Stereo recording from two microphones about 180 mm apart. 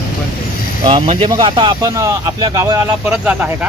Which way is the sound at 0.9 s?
30° right (ahead or behind).